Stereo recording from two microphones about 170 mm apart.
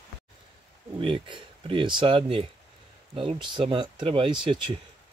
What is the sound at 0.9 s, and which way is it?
Speech, 30° right (ahead or behind).